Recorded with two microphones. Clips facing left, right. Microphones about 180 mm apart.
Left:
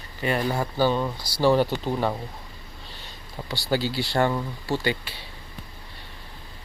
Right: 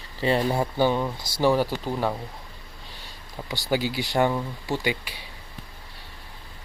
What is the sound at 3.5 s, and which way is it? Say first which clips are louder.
Speech: even; 15° right (ahead or behind).